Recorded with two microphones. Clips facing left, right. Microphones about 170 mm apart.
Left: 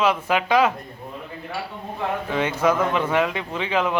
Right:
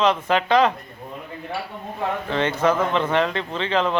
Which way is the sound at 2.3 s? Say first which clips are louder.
Right 1 dB; 10° left (ahead or behind).